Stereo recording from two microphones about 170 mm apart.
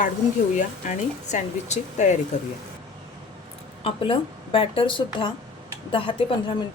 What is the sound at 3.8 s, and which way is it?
Speech, 30° left (ahead or behind).